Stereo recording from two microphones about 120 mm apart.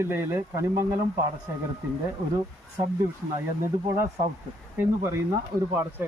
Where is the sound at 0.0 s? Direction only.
20° right (ahead or behind).